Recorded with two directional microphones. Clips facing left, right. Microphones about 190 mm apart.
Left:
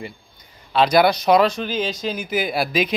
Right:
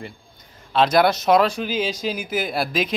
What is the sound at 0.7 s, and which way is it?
Speech, centre (ahead or behind).